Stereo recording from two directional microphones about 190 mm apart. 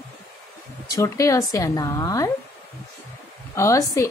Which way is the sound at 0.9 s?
15° left (ahead or behind).